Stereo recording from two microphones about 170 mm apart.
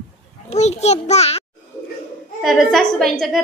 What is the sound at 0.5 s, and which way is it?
Speech, 40° left (ahead or behind).